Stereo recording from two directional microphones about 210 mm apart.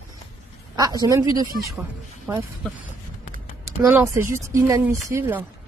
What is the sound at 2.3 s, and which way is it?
Speech, 10° right (ahead or behind).